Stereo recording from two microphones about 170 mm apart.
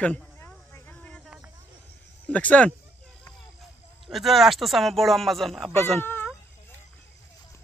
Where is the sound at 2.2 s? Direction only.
10° left (ahead or behind).